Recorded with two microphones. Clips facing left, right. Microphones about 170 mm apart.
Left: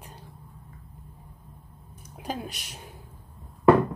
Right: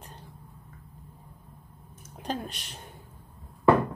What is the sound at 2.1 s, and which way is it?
Speech, 5° left (ahead or behind).